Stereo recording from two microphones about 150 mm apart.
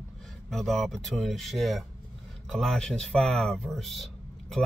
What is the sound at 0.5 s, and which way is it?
Speech, centre (ahead or behind).